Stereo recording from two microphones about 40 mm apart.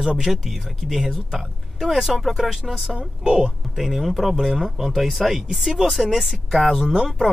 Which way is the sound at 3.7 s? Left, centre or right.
Centre.